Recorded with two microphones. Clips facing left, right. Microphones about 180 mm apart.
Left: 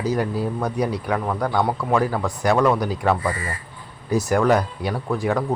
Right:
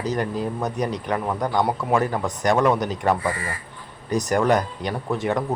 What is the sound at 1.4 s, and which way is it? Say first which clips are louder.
Speech: even; 15° right (ahead or behind).